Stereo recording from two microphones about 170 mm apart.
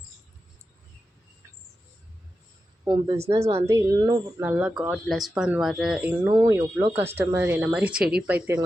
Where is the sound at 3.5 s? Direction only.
20° right (ahead or behind).